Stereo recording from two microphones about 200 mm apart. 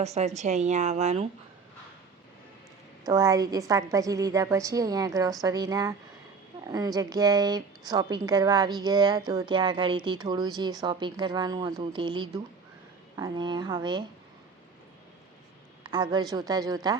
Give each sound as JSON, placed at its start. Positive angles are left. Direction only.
{"t": 0.0, "sound": "a woman's voice", "side_deg": -30}
{"t": 3.1, "sound": "a woman's voice", "side_deg": -15}
{"t": 15.8, "sound": "a woman's voice", "side_deg": -20}